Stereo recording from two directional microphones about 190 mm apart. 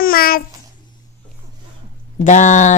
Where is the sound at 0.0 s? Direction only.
50° left (ahead or behind).